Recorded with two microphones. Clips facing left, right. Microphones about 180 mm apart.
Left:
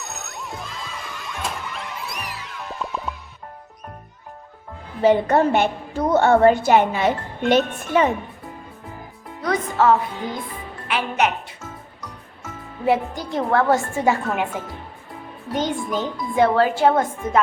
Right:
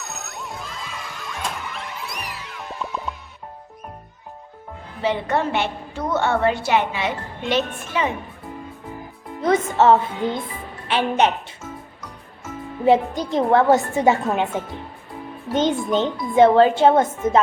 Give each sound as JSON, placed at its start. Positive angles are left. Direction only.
{"t": 0.0, "sound": "music", "side_deg": 0}
{"t": 5.0, "sound": "a woman's voice", "side_deg": 45}
{"t": 9.4, "sound": "speech", "side_deg": -25}
{"t": 12.8, "sound": "speech", "side_deg": -20}